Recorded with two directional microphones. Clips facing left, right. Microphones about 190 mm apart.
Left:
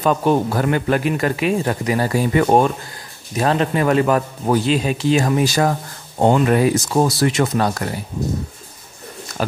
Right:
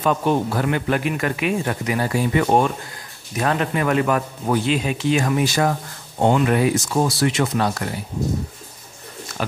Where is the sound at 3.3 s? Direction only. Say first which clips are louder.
Left 3 dB; 30° left (ahead or behind).